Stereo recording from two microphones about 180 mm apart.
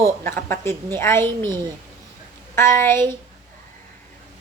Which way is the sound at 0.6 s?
15° left (ahead or behind).